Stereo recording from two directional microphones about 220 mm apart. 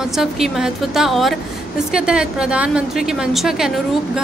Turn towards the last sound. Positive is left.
turn(degrees=0)  # may be behind; listen again after turning